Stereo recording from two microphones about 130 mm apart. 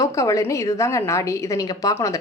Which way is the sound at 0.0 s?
25° left (ahead or behind).